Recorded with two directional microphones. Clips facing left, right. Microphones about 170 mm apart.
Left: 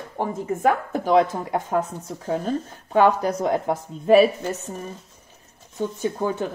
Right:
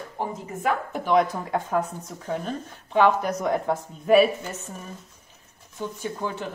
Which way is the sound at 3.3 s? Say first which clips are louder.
Left 2 dB; 25° left (ahead or behind).